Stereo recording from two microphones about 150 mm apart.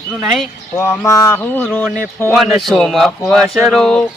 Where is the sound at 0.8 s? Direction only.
20° left (ahead or behind).